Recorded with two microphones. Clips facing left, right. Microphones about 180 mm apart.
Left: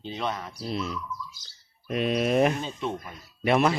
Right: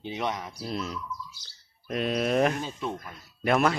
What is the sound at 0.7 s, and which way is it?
Speech, centre (ahead or behind).